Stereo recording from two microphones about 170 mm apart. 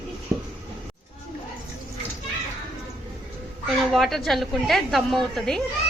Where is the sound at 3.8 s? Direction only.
Centre (ahead or behind).